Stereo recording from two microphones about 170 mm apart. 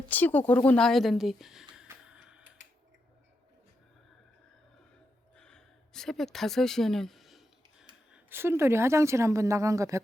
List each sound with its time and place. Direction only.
0.1 s speech: 10° left (ahead or behind); by 2.4 s 5° right (ahead or behind)
5.4 s a sound: 5° left (ahead or behind)
8.1 s a woman's voice: 15° right (ahead or behind)